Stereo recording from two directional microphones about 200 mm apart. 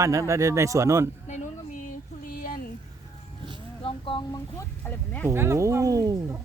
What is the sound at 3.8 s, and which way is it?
Speech, 25° left (ahead or behind).